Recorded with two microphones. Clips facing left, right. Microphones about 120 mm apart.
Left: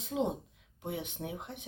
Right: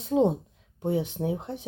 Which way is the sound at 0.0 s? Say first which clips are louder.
Right 10 dB; 30° right (ahead or behind).